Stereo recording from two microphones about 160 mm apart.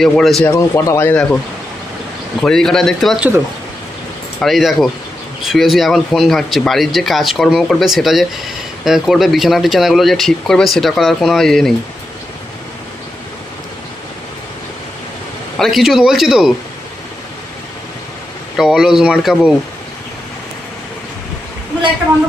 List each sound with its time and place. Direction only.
0.0 s speech: centre (ahead or behind)
0.5 s speech: 15° left (ahead or behind)
2.4 s speech: 5° left (ahead or behind)
4.4 s speech: centre (ahead or behind)
15.5 s speech: centre (ahead or behind)
18.6 s speech: 5° right (ahead or behind)